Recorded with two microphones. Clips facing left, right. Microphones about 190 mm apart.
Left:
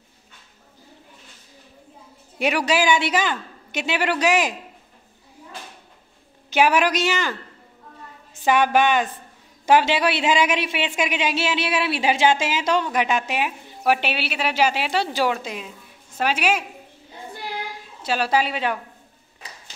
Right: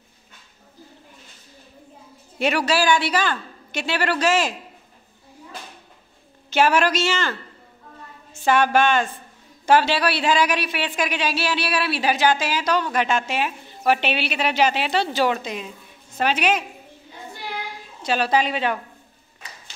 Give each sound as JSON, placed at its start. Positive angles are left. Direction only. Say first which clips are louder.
{"t": 2.3, "sound": "a woman's voice", "louder": "even", "side_deg": 15}
{"t": 6.5, "sound": "a woman's voice", "louder": "even", "side_deg": 15}
{"t": 8.5, "sound": "a woman's voice", "louder": "even", "side_deg": 15}
{"t": 18.0, "sound": "a woman's voice", "louder": "right 1 dB", "side_deg": 5}